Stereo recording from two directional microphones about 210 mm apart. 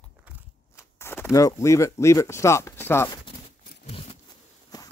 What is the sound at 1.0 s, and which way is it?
Speech, 10° left (ahead or behind).